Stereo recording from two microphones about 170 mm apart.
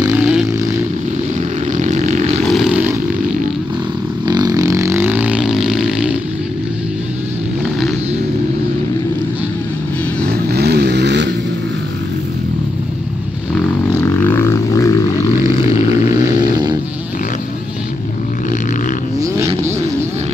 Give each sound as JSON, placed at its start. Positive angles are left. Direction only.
{"t": 0.1, "sound": "vehicle", "side_deg": -5}
{"t": 1.8, "sound": "a sound", "side_deg": -45}
{"t": 2.4, "sound": "vehicle", "side_deg": 0}
{"t": 4.3, "sound": "vehicle", "side_deg": -25}
{"t": 10.5, "sound": "vehicle", "side_deg": -70}
{"t": 14.2, "sound": "a sound", "side_deg": 15}